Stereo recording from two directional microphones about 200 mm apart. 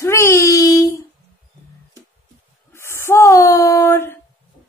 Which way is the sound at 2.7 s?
15° left (ahead or behind).